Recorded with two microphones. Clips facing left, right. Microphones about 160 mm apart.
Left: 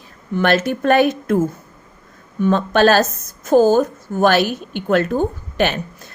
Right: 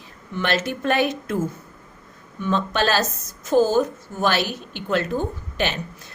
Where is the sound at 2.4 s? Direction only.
50° left (ahead or behind).